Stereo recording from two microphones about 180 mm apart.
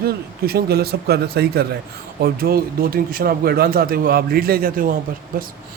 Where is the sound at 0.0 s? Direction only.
60° right (ahead or behind).